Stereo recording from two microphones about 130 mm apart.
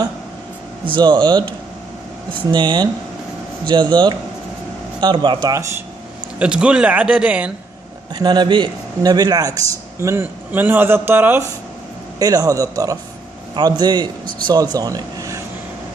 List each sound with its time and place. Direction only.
0.9 s speech: 35° right (ahead or behind)
2.5 s speech: 35° right (ahead or behind)
6.4 s speech: 5° right (ahead or behind)
8.1 s a man's voice: 35° right (ahead or behind); by 11.4 s 15° right (ahead or behind)
12.2 s a man's voice: 30° right (ahead or behind)